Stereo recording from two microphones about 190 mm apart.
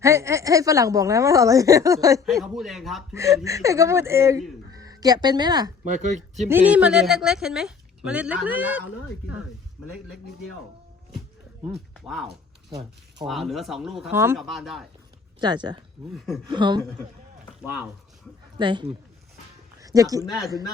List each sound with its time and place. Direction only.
0.0 s speech: 15° right (ahead or behind)
2.2 s a woman's voice: centre (ahead or behind)
3.2 s speech: 15° right (ahead or behind)
5.8 s speech: 40° right (ahead or behind)
6.7 s a woman's voice: 5° right (ahead or behind)
12.0 s a woman's voice: centre (ahead or behind)
12.7 s speech: 20° right (ahead or behind)
13.2 s a woman's voice: centre (ahead or behind)
14.1 s speech: 15° right (ahead or behind)
14.3 s a woman's voice: centre (ahead or behind)
15.4 s speech: 25° right (ahead or behind)
16.1 s a woman's voice: centre (ahead or behind)
16.5 s speech: 25° right (ahead or behind)
18.5 s speech: 25° right (ahead or behind)